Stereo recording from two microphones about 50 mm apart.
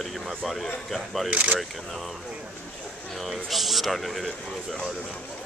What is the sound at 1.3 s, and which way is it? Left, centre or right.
Speech, right.